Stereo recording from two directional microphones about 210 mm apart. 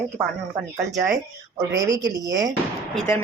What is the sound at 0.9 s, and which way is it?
Speech, 15° right (ahead or behind).